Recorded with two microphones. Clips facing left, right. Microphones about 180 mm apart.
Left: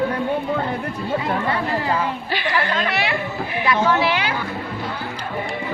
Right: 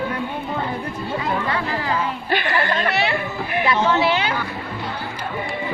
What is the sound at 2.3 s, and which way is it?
Speech, 55° right (ahead or behind).